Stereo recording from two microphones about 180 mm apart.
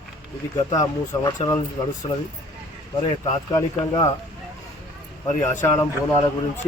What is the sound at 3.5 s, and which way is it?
Speech, 20° left (ahead or behind).